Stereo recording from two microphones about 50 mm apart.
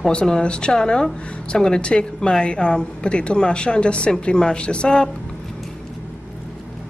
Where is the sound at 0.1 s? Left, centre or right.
Centre.